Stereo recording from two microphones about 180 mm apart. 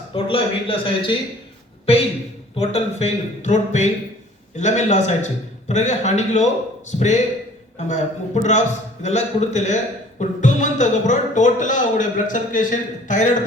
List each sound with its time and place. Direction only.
0.1 s a man's voice: 30° left (ahead or behind)
2.6 s a man's voice: 35° left (ahead or behind)